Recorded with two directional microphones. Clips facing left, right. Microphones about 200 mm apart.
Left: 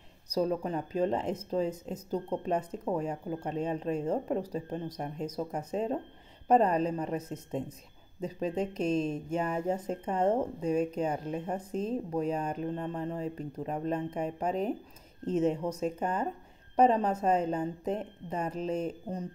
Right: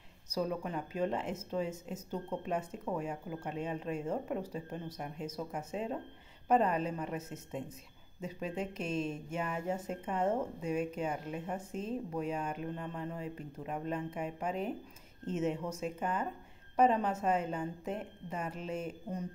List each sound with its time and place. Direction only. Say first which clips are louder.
0.3 s speech: left 6 dB; 35° left (ahead or behind)